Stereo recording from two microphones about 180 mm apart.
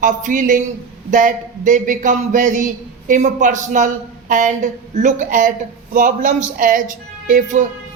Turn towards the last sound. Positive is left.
turn(degrees=-45)  # may be behind; listen again after turning